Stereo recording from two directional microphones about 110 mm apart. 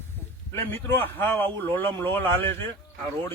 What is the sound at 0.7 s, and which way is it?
Speech, 20° left (ahead or behind).